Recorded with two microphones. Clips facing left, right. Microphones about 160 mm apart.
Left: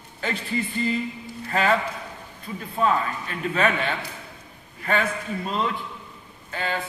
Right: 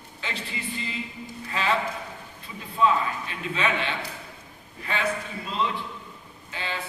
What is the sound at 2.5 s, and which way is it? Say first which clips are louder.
A man's voice: even; 50° left (ahead or behind).